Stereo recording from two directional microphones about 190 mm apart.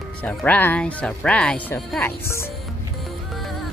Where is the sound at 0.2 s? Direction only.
10° left (ahead or behind).